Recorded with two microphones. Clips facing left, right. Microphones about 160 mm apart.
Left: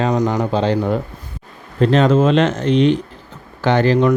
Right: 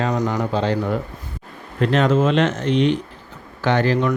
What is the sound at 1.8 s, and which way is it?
Speech, 30° left (ahead or behind).